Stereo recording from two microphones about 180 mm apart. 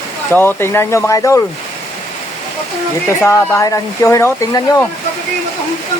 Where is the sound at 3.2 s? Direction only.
15° left (ahead or behind).